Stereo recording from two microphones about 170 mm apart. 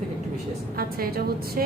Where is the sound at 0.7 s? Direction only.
65° right (ahead or behind).